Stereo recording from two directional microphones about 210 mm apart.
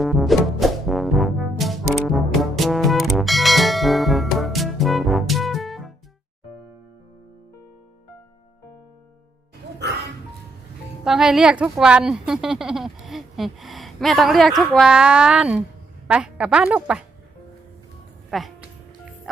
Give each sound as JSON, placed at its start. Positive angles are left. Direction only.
{"t": 0.0, "sound": "music", "side_deg": 0}
{"t": 11.0, "sound": "a woman's voice", "side_deg": 0}
{"t": 18.3, "sound": "music", "side_deg": 0}